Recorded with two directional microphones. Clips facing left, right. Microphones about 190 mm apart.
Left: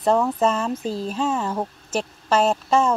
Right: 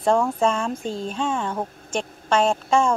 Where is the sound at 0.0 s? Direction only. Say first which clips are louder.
Even; 5° left (ahead or behind).